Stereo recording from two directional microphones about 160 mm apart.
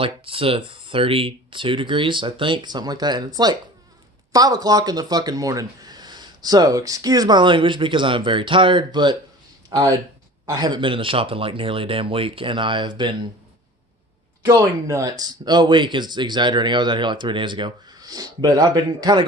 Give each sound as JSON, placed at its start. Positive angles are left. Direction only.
{"t": 0.0, "sound": "speech", "side_deg": -35}
{"t": 14.4, "sound": "speech", "side_deg": -20}